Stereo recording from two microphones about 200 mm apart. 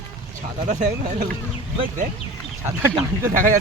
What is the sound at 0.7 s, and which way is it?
Speech, 40° right (ahead or behind).